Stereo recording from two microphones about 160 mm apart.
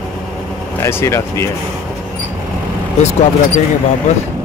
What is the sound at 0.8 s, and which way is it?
Speech, 15° left (ahead or behind).